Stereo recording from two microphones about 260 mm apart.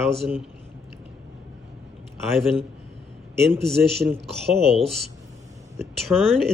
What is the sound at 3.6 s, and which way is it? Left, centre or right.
Speech, centre.